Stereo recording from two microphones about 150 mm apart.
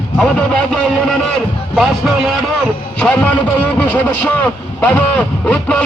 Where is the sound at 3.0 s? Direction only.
10° left (ahead or behind).